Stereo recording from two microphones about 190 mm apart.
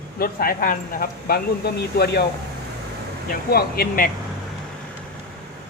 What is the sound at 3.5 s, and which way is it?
Speech, 50° left (ahead or behind).